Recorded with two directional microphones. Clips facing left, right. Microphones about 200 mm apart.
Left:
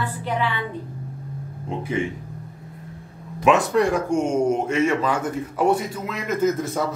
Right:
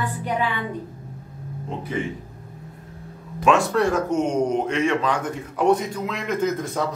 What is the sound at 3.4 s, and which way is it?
Speech, 15° left (ahead or behind).